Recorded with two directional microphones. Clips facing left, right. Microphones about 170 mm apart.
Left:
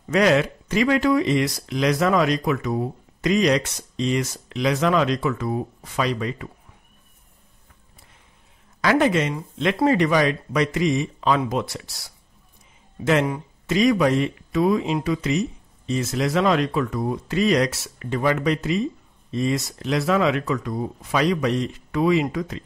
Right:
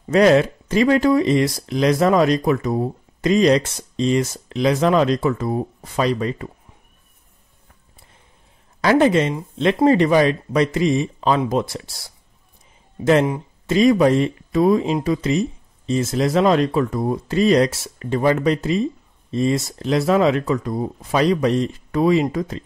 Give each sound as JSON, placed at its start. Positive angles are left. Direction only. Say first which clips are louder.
{"t": 0.1, "sound": "speech", "louder": "right 5 dB", "side_deg": -35}
{"t": 8.8, "sound": "speech", "louder": "right 4 dB", "side_deg": -30}
{"t": 13.0, "sound": "speech", "louder": "right 4 dB", "side_deg": -35}